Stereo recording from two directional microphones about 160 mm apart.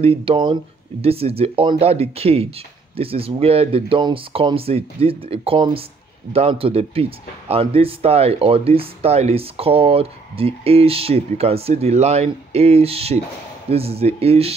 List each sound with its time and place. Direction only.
0.0 s speech: 35° right (ahead or behind)